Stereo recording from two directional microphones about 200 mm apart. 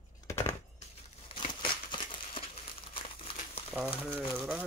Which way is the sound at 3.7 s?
5° right (ahead or behind).